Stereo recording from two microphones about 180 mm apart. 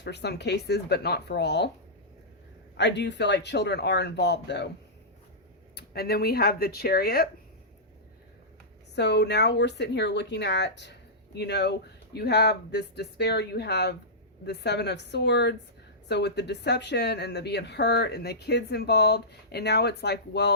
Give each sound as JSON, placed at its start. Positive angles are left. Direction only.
{"t": 0.0, "sound": "speech", "side_deg": 70}
{"t": 2.7, "sound": "speech", "side_deg": 75}
{"t": 5.7, "sound": "speech", "side_deg": 60}
{"t": 9.0, "sound": "speech", "side_deg": 70}